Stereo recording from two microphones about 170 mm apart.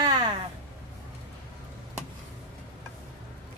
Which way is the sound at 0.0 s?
25° right (ahead or behind).